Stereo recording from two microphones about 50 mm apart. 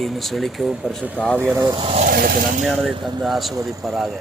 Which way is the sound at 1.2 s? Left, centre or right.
Left.